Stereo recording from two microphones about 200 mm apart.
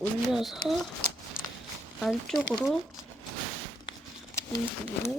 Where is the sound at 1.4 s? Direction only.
45° left (ahead or behind).